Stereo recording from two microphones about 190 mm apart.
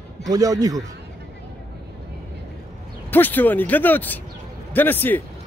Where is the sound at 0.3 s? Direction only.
20° right (ahead or behind).